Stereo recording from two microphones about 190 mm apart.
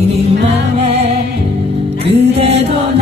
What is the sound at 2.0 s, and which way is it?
Music, 30° right (ahead or behind).